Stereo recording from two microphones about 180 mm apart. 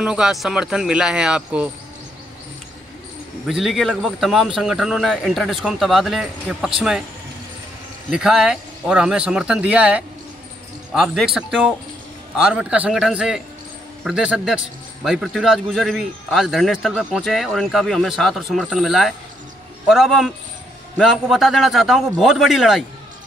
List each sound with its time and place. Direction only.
0.0 s a man's voice: 5° right (ahead or behind)
3.4 s a man's voice: centre (ahead or behind)
8.1 s a man's voice: 5° right (ahead or behind)